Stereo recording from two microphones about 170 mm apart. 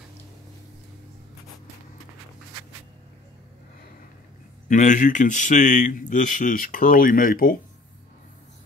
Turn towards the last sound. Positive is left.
turn(degrees=55)  # may be behind; listen again after turning